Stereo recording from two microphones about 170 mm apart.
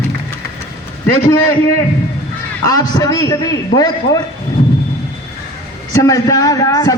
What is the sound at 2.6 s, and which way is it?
A man's voice, 20° left (ahead or behind).